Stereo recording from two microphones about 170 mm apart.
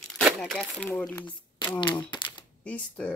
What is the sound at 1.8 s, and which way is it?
Speech, 25° left (ahead or behind).